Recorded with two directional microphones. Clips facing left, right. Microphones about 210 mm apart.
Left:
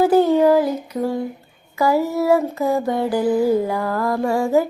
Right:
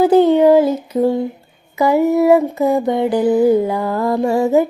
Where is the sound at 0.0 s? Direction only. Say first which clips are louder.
Right 4 dB; 20° right (ahead or behind).